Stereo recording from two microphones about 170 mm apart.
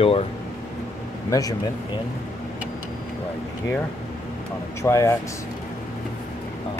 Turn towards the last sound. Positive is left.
turn(degrees=15)  # may be behind; listen again after turning